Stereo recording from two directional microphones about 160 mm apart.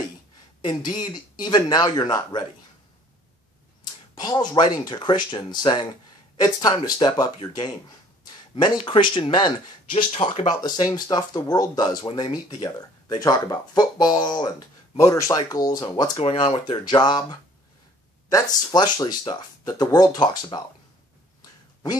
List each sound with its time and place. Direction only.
0.7 s speech: 25° left (ahead or behind)
4.1 s speech: 25° left (ahead or behind)
16.2 s speech: 35° left (ahead or behind)